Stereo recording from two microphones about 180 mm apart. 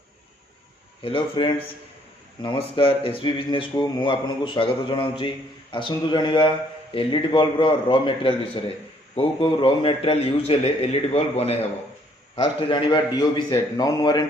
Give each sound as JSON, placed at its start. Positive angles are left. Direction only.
{"t": 1.0, "sound": "a man's voice", "side_deg": 25}